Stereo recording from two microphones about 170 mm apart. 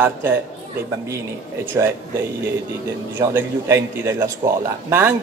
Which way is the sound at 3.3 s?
15° right (ahead or behind).